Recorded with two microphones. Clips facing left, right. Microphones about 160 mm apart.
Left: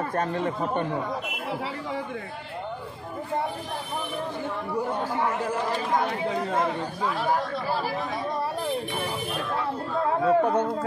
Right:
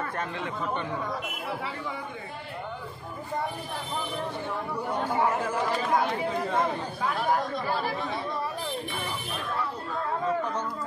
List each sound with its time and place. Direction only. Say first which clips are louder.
0.1 s speech: left 6 dB; 40° left (ahead or behind)
10.2 s speech: left 10 dB; 60° left (ahead or behind)